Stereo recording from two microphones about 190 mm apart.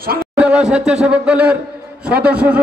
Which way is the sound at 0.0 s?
50° right (ahead or behind).